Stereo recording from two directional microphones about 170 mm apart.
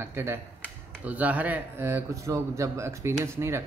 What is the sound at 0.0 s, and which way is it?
Speech, 15° right (ahead or behind).